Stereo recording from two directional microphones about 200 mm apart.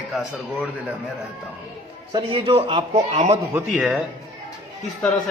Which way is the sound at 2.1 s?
25° right (ahead or behind).